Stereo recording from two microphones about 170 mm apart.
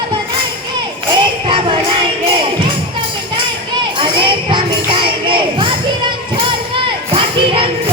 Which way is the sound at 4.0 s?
30° right (ahead or behind).